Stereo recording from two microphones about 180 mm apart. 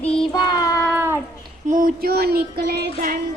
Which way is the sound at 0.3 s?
20° left (ahead or behind).